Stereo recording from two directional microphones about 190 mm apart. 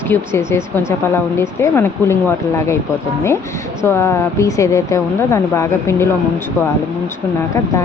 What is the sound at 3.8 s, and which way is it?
Speech, 15° left (ahead or behind).